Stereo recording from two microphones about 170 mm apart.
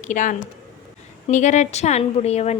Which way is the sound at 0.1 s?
45° left (ahead or behind).